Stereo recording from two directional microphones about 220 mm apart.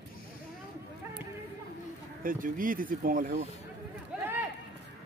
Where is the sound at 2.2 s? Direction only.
40° right (ahead or behind).